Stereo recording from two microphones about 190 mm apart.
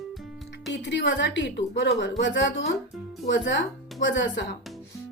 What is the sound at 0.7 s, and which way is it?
A woman's voice, 70° left (ahead or behind).